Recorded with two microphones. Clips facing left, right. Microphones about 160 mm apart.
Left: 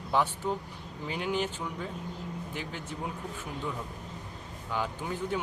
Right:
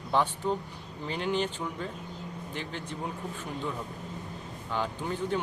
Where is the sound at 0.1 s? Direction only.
10° left (ahead or behind).